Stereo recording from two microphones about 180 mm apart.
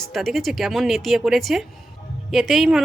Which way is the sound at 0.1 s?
Centre (ahead or behind).